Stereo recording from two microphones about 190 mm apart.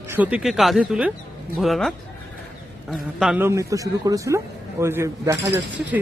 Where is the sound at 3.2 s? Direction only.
5° right (ahead or behind).